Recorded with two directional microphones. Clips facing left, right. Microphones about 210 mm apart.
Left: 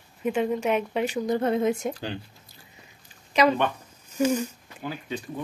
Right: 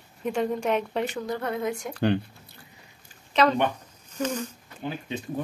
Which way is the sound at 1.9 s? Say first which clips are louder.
Right 10 dB; 60° right (ahead or behind).